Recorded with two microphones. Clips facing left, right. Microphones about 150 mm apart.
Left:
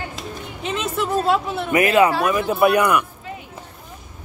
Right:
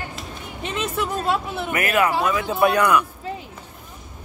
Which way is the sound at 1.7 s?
20° left (ahead or behind).